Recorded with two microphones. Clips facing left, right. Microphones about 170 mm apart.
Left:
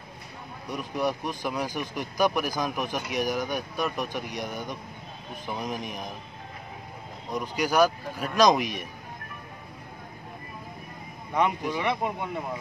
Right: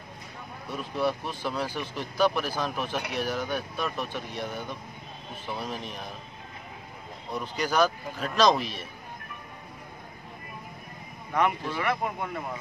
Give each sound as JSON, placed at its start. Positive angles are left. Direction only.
{"t": 0.7, "sound": "speech", "side_deg": 15}
{"t": 7.2, "sound": "speech", "side_deg": 10}
{"t": 11.3, "sound": "speech", "side_deg": 15}